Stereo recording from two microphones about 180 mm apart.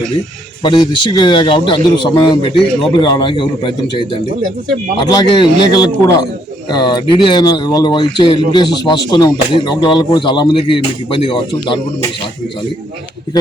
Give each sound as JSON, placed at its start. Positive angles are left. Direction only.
{"t": 0.6, "sound": "speech", "side_deg": 25}